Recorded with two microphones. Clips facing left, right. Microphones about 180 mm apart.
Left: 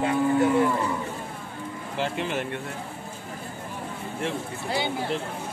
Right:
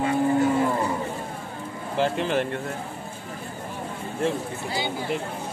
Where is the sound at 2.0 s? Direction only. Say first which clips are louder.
Right 5 dB; 45° right (ahead or behind).